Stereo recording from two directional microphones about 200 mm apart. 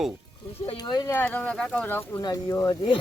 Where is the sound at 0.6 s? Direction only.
25° left (ahead or behind).